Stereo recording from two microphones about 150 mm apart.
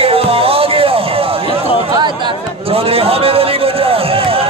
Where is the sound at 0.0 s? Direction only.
40° right (ahead or behind).